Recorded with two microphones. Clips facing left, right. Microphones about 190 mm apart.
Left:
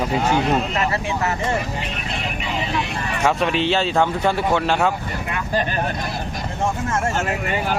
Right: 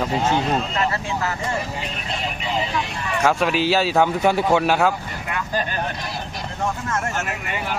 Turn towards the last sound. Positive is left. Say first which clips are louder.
# left 3 dB
turn(degrees=30)  # may be behind; listen again after turning